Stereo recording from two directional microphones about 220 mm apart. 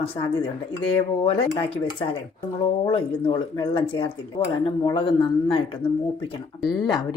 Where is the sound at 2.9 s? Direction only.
25° left (ahead or behind).